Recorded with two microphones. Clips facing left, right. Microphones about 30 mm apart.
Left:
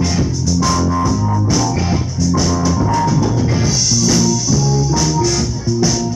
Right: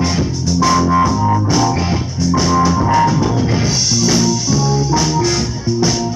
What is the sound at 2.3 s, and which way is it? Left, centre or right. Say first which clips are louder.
Organ: right 3 dB; right.